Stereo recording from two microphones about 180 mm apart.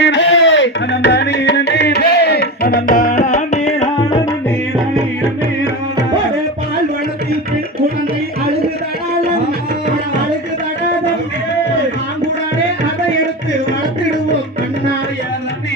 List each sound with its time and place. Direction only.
0.0 s music: 80° left; by 3.8 s 35° left (ahead or behind)